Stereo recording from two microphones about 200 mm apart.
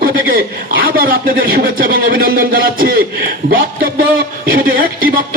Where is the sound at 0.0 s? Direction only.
45° right (ahead or behind).